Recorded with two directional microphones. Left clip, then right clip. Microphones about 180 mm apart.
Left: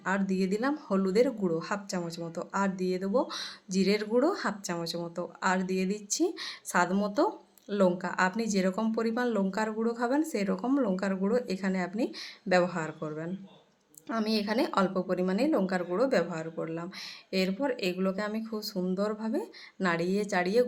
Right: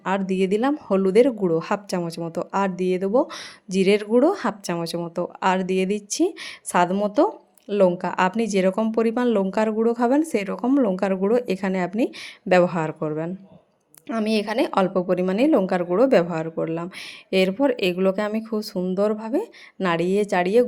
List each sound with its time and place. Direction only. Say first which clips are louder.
0.0 s a woman's voice: right 8 dB; 35° right (ahead or behind)